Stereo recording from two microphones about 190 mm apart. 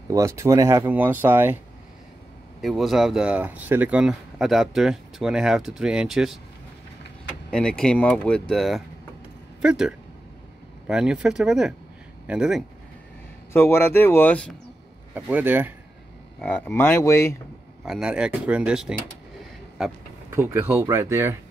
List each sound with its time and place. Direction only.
0.1 s speech: 15° right (ahead or behind)
2.6 s speech: centre (ahead or behind)
7.5 s speech: 5° left (ahead or behind)
13.5 s speech: 10° left (ahead or behind)
15.1 s speech: 10° right (ahead or behind)
16.3 s speech: 10° left (ahead or behind)
17.8 s speech: 5° right (ahead or behind)
20.2 s speech: 15° right (ahead or behind)